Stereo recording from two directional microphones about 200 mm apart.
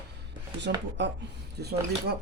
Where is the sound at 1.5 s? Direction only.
55° right (ahead or behind).